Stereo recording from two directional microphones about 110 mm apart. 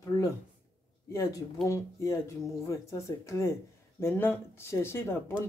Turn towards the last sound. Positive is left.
turn(degrees=20)  # may be behind; listen again after turning